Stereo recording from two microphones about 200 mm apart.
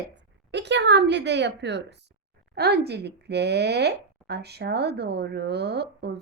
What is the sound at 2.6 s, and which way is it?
Speech, 55° right (ahead or behind).